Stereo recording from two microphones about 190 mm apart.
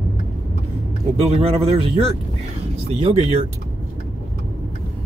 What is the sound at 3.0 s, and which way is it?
Speech, 35° right (ahead or behind).